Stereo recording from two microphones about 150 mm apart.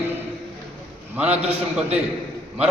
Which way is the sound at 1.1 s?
10° right (ahead or behind).